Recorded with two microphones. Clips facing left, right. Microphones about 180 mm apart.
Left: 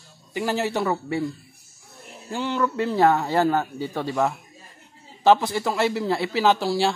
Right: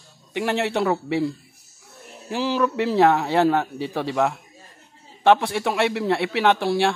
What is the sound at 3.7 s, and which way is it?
Speech, 80° right.